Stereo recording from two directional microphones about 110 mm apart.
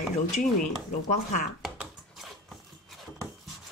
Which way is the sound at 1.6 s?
Centre (ahead or behind).